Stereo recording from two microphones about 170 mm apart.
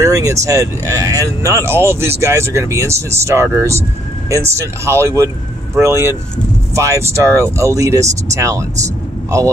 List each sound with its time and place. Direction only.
0.0 s speech: 20° right (ahead or behind)